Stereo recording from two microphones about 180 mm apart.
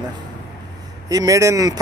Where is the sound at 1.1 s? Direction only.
20° right (ahead or behind).